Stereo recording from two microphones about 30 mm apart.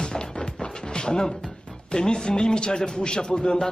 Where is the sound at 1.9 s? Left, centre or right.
Left.